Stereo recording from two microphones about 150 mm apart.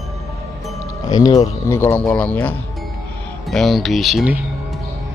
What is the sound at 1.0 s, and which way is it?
Speech, 25° left (ahead or behind).